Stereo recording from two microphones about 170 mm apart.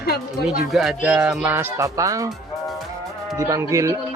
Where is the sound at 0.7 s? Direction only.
Centre (ahead or behind); by 2.3 s 20° right (ahead or behind).